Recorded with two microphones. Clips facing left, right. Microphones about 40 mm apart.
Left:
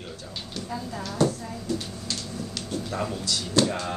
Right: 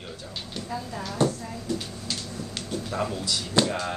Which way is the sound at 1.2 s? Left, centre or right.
Right.